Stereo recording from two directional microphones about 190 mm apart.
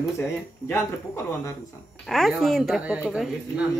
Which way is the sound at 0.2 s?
15° left (ahead or behind).